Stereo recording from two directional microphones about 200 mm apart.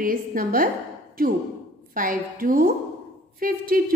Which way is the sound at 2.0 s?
45° right (ahead or behind).